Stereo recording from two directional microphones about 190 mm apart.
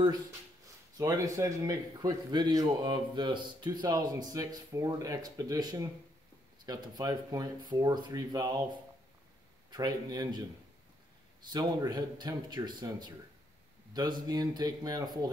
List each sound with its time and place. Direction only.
0.9 s a man's voice: 15° right (ahead or behind)
9.7 s a man's voice: 20° right (ahead or behind)
11.5 s a man's voice: 20° right (ahead or behind)
14.2 s a man's voice: 20° right (ahead or behind)